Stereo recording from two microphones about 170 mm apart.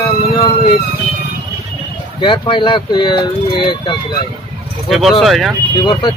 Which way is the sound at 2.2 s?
30° left (ahead or behind).